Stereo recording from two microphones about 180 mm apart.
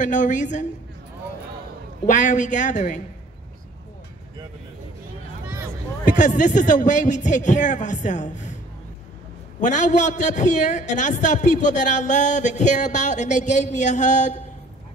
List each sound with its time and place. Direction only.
0.0 s speech: 45° left (ahead or behind)
2.0 s speech: 45° left (ahead or behind)
6.0 s speech: 45° left (ahead or behind)
9.6 s a man's voice: 45° left (ahead or behind)